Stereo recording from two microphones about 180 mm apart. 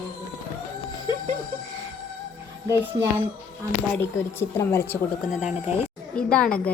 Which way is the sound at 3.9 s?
15° left (ahead or behind).